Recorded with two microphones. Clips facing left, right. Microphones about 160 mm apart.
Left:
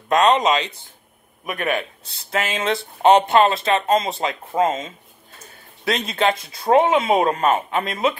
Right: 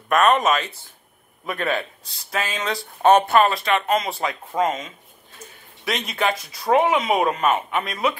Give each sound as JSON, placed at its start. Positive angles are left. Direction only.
{"t": 0.1, "sound": "a man's voice", "side_deg": 20}
{"t": 2.0, "sound": "speech", "side_deg": 25}